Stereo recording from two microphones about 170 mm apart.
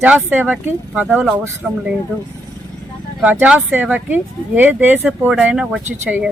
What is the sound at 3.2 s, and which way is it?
Speech, 10° right (ahead or behind).